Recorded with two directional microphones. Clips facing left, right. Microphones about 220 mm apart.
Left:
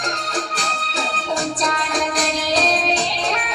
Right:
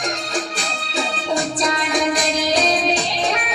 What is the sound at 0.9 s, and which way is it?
Music, 10° right (ahead or behind).